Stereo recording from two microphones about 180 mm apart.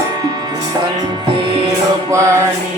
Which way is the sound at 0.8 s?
30° right (ahead or behind).